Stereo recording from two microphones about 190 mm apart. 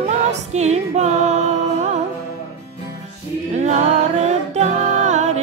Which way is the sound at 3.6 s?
35° right (ahead or behind).